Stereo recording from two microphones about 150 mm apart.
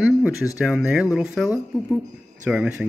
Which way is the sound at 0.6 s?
5° right (ahead or behind).